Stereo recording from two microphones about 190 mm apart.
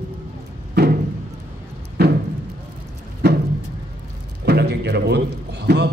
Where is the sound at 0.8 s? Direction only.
60° right (ahead or behind).